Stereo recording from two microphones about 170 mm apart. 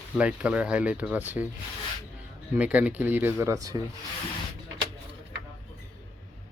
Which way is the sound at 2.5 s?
10° right (ahead or behind).